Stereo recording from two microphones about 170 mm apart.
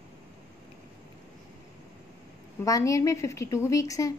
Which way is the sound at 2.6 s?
20° left (ahead or behind).